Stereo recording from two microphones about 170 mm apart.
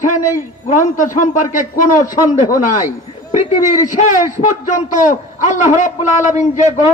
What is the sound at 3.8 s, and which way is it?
A man's voice, 45° left (ahead or behind).